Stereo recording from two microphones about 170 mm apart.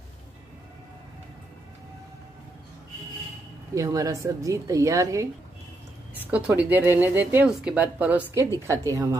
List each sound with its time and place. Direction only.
3.7 s speech: 20° right (ahead or behind)
6.3 s speech: 5° right (ahead or behind)